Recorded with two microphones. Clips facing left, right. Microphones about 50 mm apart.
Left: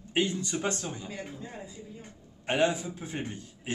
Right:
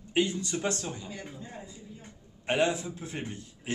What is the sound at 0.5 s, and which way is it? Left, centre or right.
Speech, centre.